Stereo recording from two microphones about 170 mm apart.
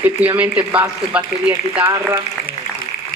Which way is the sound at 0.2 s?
10° right (ahead or behind).